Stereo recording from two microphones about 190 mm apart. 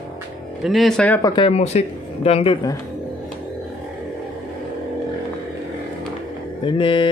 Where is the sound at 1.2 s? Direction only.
25° left (ahead or behind).